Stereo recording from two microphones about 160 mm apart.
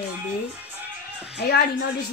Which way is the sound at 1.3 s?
80° left.